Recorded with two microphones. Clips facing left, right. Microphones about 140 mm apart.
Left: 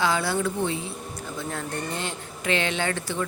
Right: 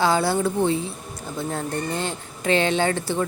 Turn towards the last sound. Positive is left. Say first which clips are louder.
# right 6 dB
turn(degrees=-30)  # may be behind; listen again after turning